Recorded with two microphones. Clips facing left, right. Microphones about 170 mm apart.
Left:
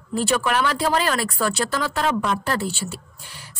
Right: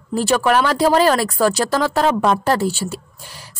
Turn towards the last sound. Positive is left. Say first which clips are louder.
# right 3 dB
turn(degrees=-40)  # may be behind; listen again after turning